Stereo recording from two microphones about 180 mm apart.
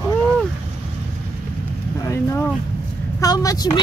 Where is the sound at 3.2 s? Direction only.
20° left (ahead or behind).